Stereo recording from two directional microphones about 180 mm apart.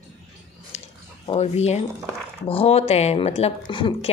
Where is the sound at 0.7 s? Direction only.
35° left (ahead or behind).